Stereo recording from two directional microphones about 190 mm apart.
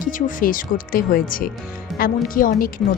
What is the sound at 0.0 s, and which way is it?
A woman's voice, 45° left (ahead or behind).